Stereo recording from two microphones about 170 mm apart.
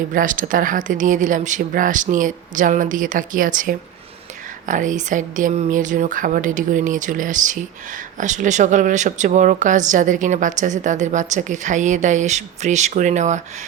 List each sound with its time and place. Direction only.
0.1 s speech: 50° right (ahead or behind)